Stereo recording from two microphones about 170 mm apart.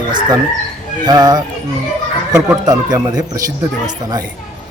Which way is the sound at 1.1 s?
25° right (ahead or behind).